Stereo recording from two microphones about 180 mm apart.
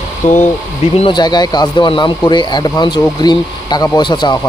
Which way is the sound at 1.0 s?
25° left (ahead or behind).